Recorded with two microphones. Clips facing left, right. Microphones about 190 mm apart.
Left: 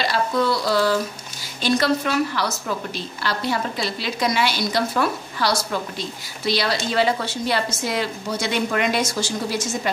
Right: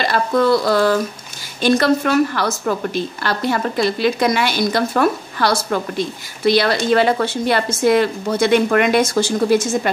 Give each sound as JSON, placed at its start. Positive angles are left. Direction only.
{"t": 0.0, "sound": "a woman's voice", "side_deg": -55}